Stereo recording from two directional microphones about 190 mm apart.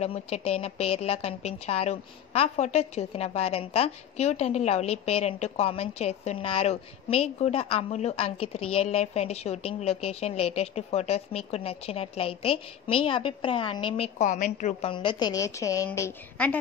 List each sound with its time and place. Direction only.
0.0 s a woman's voice: 30° left (ahead or behind); by 16.5 s 10° left (ahead or behind)